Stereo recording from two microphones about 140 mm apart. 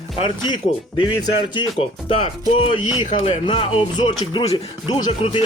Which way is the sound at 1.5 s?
40° left (ahead or behind).